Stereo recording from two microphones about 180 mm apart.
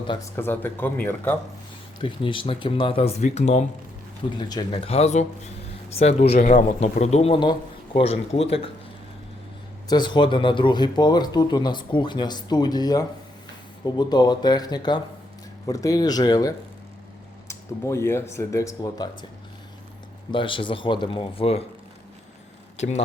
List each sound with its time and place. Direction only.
0.1 s speech: 15° left (ahead or behind)
2.0 s speech: 30° left (ahead or behind)
4.4 s a man's voice: 25° left (ahead or behind)
9.9 s speech: 25° left (ahead or behind)
20.3 s speech: 25° left (ahead or behind)
22.8 s a man's voice: 40° left (ahead or behind)